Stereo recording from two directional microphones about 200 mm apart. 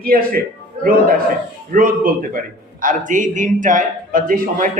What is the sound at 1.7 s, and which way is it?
A man's voice, 45° right (ahead or behind).